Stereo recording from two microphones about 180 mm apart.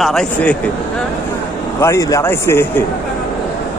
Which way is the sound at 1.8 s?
15° left (ahead or behind).